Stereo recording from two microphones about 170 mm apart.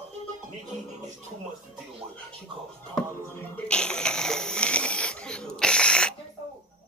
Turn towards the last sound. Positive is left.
turn(degrees=5)  # may be behind; listen again after turning